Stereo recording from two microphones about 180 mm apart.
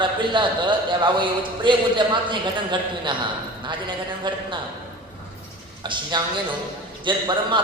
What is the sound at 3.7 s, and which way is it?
Speech, 25° right (ahead or behind).